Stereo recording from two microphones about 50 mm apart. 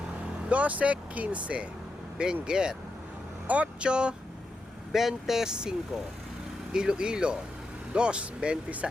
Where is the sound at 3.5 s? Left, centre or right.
Right.